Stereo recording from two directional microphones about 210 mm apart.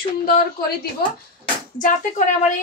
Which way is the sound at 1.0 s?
45° left (ahead or behind).